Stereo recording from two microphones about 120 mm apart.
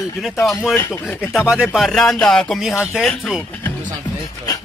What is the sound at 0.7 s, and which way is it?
Speech, 20° left (ahead or behind).